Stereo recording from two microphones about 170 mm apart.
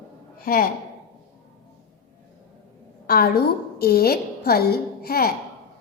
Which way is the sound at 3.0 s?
65° left (ahead or behind).